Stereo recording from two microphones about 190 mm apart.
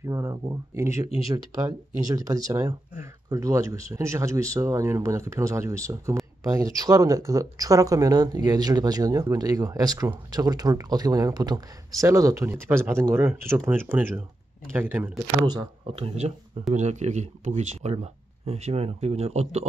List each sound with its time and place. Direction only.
0.0 s speech: 15° right (ahead or behind)
1.0 s speech: 30° left (ahead or behind)
1.3 s speech: 20° right (ahead or behind)